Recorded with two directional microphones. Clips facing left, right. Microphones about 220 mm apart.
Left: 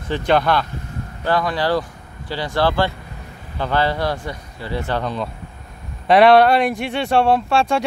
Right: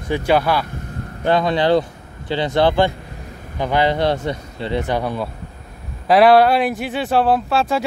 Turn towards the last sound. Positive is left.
turn(degrees=-5)  # may be behind; listen again after turning